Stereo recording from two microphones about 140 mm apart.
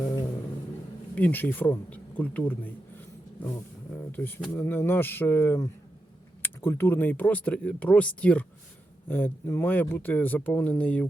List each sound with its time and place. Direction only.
1.1 s speech: 10° left (ahead or behind)
4.1 s speech: 15° left (ahead or behind)